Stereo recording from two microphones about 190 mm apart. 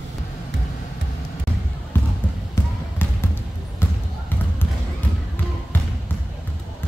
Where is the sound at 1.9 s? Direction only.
10° left (ahead or behind).